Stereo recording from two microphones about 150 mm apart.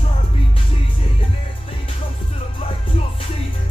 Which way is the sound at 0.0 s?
40° left (ahead or behind).